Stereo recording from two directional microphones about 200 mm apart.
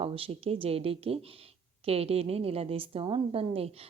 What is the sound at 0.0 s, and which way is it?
A woman's voice, 30° right (ahead or behind).